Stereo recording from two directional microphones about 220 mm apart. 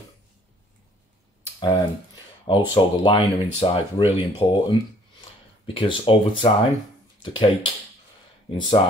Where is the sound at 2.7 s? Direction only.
20° left (ahead or behind).